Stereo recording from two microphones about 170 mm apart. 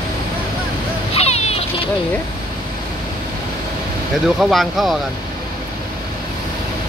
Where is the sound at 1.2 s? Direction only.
40° left (ahead or behind).